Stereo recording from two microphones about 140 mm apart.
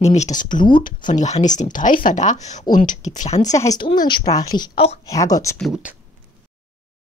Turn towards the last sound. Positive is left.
turn(degrees=0)  # may be behind; listen again after turning